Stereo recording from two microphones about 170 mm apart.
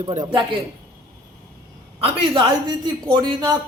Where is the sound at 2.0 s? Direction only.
30° right (ahead or behind).